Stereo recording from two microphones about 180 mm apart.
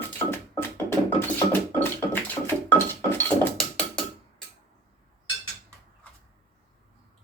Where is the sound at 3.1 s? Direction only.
5° left (ahead or behind).